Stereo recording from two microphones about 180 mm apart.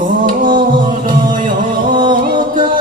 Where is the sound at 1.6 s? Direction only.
25° right (ahead or behind).